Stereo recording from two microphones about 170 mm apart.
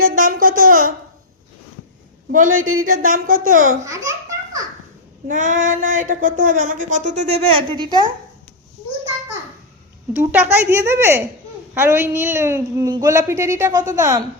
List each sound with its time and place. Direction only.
0.0 s babbling: 55° right (ahead or behind)
2.3 s speech: 50° right (ahead or behind)
3.8 s baby laughter: 20° right (ahead or behind)
5.3 s speech: 45° right (ahead or behind); by 8.0 s 25° right (ahead or behind)
10.1 s speech: 10° right (ahead or behind)